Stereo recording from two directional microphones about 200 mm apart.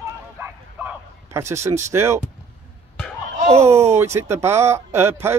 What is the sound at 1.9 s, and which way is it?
Speech, 15° right (ahead or behind).